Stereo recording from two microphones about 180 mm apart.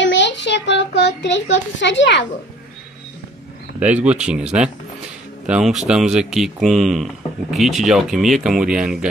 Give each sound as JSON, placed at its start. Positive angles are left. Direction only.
{"t": 0.0, "sound": "a child's voice", "side_deg": 85}
{"t": 3.8, "sound": "speech", "side_deg": -5}